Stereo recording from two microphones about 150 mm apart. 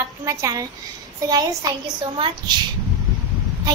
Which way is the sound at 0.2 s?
20° right (ahead or behind).